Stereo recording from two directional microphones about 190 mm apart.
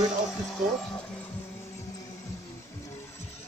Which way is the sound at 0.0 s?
Centre (ahead or behind).